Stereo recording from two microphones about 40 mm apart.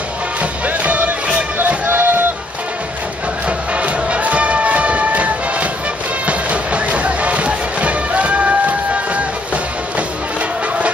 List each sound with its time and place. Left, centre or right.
0.4 s music: right
1.9 s a sound: right
3.4 s music: right